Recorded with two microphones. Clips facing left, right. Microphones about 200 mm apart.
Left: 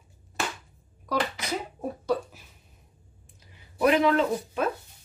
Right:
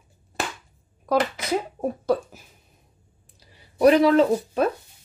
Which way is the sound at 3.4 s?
35° right (ahead or behind).